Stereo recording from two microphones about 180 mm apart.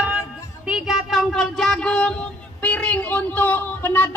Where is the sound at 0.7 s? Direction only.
5° right (ahead or behind).